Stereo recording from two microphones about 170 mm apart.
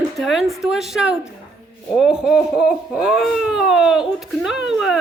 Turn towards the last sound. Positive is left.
turn(degrees=0)  # may be behind; listen again after turning